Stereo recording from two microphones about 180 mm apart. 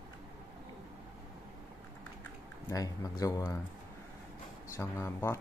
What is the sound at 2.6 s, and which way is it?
Speech, 20° left (ahead or behind).